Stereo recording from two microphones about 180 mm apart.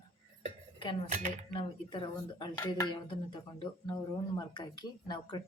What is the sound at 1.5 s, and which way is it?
Speech, 25° left (ahead or behind).